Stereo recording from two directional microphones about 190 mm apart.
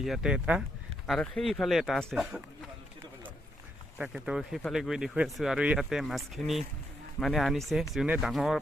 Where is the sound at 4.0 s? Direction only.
5° right (ahead or behind).